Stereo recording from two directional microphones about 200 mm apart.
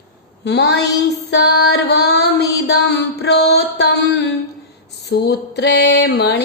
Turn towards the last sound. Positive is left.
turn(degrees=55)  # may be behind; listen again after turning